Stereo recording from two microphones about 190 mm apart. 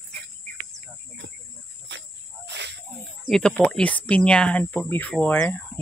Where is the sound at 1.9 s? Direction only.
65° right (ahead or behind).